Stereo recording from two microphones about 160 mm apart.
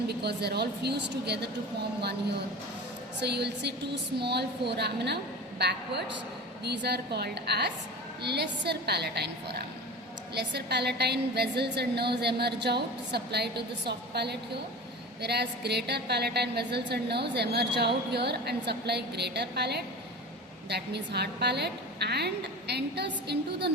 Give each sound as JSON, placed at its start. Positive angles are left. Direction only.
{"t": 0.1, "sound": "a woman's voice", "side_deg": -90}
{"t": 3.2, "sound": "a woman's voice", "side_deg": -90}
{"t": 10.3, "sound": "a woman's voice", "side_deg": -90}